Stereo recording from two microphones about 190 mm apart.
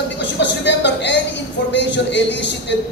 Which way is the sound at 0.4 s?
70° left (ahead or behind).